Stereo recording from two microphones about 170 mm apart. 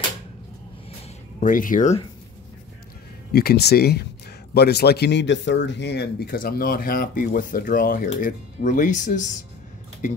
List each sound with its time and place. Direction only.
1.4 s speech: 50° left (ahead or behind)
3.3 s speech: 70° left (ahead or behind); by 9.3 s 45° left (ahead or behind)